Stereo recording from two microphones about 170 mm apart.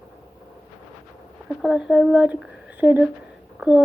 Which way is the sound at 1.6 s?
5° right (ahead or behind).